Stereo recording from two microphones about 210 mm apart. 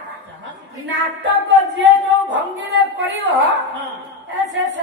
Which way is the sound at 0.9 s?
60° right (ahead or behind).